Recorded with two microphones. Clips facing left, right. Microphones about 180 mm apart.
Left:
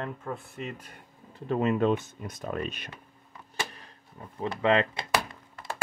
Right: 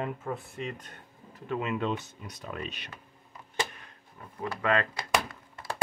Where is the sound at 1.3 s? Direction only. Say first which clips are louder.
Left 5 dB; 40° left (ahead or behind).